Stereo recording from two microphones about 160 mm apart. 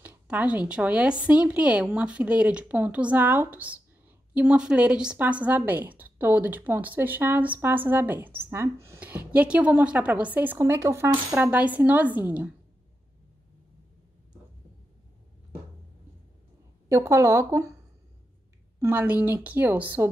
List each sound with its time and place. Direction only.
0.0 s a woman's voice: 10° right (ahead or behind)
16.9 s a woman's voice: 15° right (ahead or behind)
18.8 s a woman's voice: 10° right (ahead or behind)